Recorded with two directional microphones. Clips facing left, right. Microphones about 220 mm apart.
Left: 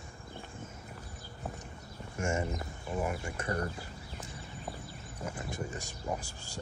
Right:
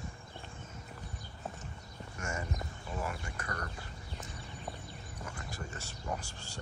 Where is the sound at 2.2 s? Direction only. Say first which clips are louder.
Left 7 dB; 25° left (ahead or behind).